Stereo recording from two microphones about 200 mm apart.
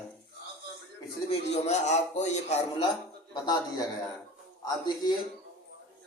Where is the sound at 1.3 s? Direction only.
30° left (ahead or behind).